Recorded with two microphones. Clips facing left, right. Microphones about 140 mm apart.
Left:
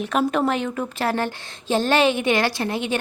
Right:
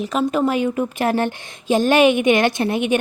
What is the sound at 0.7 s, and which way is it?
A woman's voice, 15° right (ahead or behind).